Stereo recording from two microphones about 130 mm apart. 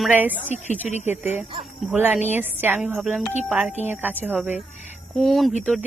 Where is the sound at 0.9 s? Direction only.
60° left (ahead or behind).